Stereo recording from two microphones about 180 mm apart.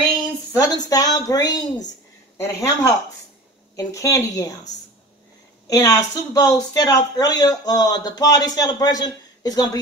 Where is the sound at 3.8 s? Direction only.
20° left (ahead or behind).